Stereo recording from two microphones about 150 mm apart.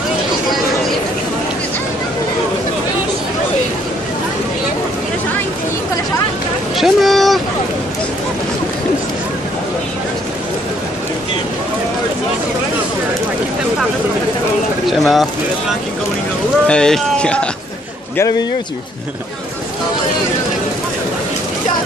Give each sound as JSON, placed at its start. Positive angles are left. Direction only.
{"t": 6.8, "sound": "boat", "side_deg": 0}
{"t": 14.9, "sound": "bird", "side_deg": 0}
{"t": 16.6, "sound": "speech", "side_deg": 5}